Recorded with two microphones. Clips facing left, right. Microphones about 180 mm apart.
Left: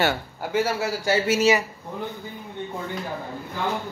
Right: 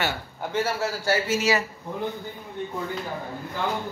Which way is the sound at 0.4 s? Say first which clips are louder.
Left 1 dB; 10° left (ahead or behind).